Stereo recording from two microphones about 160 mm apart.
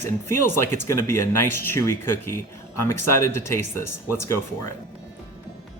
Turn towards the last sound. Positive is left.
turn(degrees=15)  # may be behind; listen again after turning